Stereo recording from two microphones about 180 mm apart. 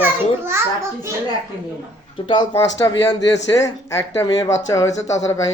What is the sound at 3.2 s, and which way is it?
Speech, 80° left.